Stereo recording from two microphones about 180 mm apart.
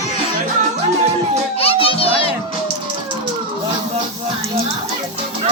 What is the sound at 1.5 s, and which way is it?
Music, 30° left (ahead or behind).